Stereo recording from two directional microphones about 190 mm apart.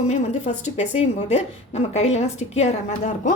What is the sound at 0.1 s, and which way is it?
A woman's voice, 40° left (ahead or behind).